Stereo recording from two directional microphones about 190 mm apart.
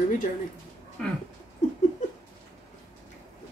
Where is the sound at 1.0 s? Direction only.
5° left (ahead or behind).